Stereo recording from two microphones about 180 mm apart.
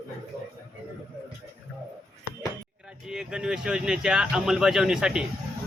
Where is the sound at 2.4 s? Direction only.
5° right (ahead or behind).